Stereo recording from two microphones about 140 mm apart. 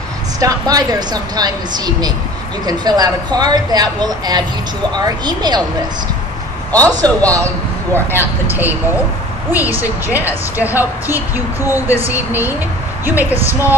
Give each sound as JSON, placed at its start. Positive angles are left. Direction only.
{"t": 0.4, "sound": "speech", "side_deg": -25}
{"t": 7.0, "sound": "a man's voice", "side_deg": 10}
{"t": 7.3, "sound": "a man's voice", "side_deg": -20}